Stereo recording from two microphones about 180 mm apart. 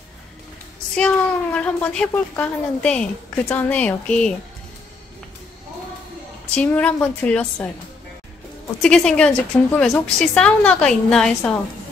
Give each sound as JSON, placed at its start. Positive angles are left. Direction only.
{"t": 0.9, "sound": "speech", "side_deg": 5}
{"t": 6.5, "sound": "speech", "side_deg": 5}
{"t": 8.8, "sound": "a woman's voice", "side_deg": 5}